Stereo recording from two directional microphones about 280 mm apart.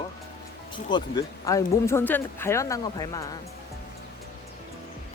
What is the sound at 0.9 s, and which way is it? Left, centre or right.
Speech, centre.